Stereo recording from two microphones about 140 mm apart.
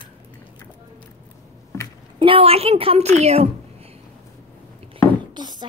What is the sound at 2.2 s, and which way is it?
A woman's voice, 40° right (ahead or behind).